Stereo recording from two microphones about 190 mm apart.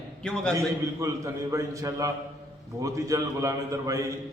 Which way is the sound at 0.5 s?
15° right (ahead or behind).